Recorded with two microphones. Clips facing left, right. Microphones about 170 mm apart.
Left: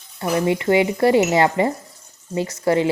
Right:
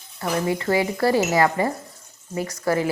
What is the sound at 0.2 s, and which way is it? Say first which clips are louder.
Speech: left 4 dB; 20° left (ahead or behind).